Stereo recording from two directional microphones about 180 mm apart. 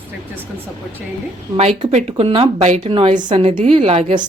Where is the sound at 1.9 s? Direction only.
35° right (ahead or behind).